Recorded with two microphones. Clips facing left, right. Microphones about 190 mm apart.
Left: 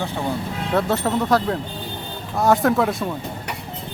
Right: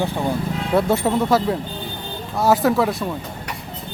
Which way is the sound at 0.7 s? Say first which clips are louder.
Right 2 dB; 10° right (ahead or behind).